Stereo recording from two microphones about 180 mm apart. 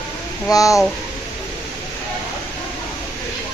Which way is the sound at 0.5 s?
20° left (ahead or behind).